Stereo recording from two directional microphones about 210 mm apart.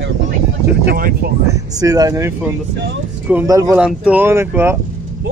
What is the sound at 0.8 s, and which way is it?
Speech, 45° right (ahead or behind).